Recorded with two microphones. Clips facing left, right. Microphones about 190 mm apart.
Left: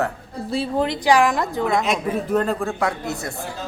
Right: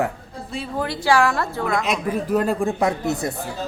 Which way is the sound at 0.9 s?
15° left (ahead or behind).